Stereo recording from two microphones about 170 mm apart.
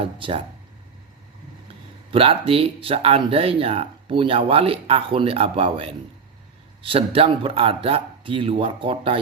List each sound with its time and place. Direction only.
0.0 s speech: 35° right (ahead or behind)
2.0 s speech: 35° right (ahead or behind)